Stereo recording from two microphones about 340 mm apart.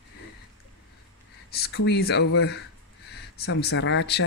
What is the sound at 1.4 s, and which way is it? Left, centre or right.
Speech, left.